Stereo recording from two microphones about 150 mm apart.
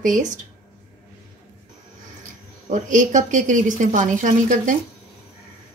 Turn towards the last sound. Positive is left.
turn(degrees=-60)  # may be behind; listen again after turning